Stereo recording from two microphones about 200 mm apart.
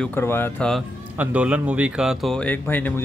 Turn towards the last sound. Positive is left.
turn(degrees=10)  # may be behind; listen again after turning